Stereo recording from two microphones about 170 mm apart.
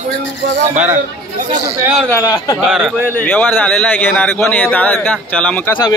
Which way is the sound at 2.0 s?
20° left (ahead or behind).